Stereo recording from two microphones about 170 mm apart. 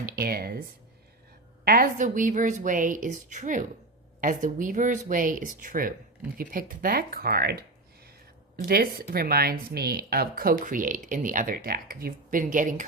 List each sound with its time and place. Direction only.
0.0 s speech: 60° right (ahead or behind)
1.6 s a woman's voice: 55° right (ahead or behind)